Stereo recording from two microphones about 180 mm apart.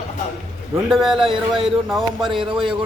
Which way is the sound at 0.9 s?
Centre (ahead or behind).